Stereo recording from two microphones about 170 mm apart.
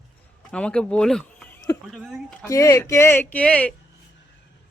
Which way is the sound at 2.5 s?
20° left (ahead or behind).